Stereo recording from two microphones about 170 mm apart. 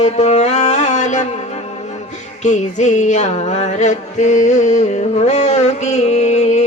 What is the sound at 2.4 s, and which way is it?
Music, 45° left (ahead or behind).